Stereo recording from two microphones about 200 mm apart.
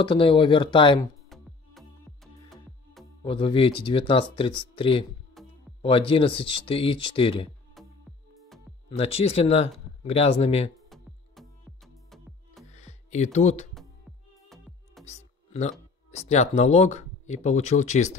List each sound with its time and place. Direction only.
0.0 s speech: 25° left (ahead or behind)
1.3 s music: centre (ahead or behind)
3.3 s speech: 25° left (ahead or behind)
5.4 s music: centre (ahead or behind)
5.8 s speech: 25° left (ahead or behind)
8.8 s speech: 30° left (ahead or behind)
10.9 s music: centre (ahead or behind)
12.6 s music: 35° left (ahead or behind)
15.0 s music: 35° left (ahead or behind)
16.1 s speech: 35° left (ahead or behind)